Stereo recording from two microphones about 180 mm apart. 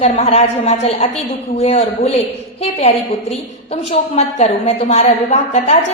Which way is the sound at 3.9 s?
35° left (ahead or behind).